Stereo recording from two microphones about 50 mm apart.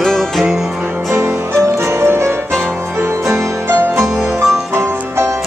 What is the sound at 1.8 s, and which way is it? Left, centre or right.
Music, right.